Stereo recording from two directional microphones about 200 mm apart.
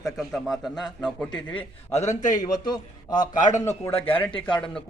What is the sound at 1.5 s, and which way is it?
A man's voice, 35° left (ahead or behind).